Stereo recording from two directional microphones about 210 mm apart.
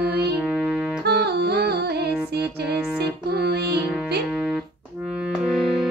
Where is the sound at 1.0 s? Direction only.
50° right (ahead or behind).